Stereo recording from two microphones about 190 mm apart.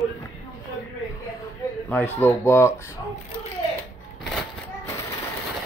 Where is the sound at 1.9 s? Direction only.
10° left (ahead or behind).